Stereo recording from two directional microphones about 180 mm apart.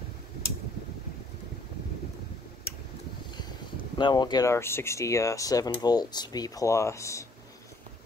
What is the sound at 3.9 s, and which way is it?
Speech, 25° left (ahead or behind).